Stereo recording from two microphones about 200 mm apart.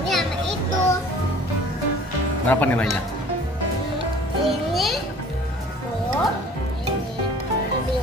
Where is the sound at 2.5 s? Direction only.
10° left (ahead or behind).